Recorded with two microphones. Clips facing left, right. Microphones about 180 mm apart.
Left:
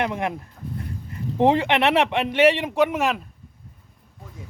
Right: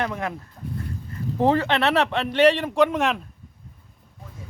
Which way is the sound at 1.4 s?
15° left (ahead or behind).